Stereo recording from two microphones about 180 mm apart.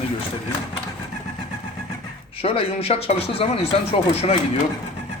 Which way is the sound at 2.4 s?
30° left (ahead or behind).